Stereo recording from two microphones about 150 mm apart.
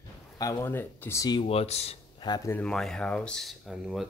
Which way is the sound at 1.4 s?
40° left (ahead or behind).